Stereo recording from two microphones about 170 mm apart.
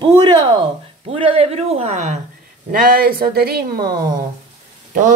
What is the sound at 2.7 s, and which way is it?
Speech, 55° right (ahead or behind).